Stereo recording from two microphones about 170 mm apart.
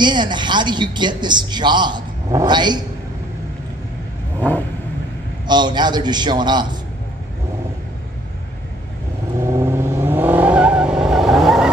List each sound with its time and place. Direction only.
0.0 s speech: 25° right (ahead or behind)
5.5 s speech: 25° right (ahead or behind)
9.4 s vehicle: 15° right (ahead or behind)